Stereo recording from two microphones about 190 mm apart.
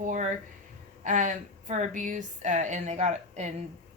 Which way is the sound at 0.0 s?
40° right (ahead or behind).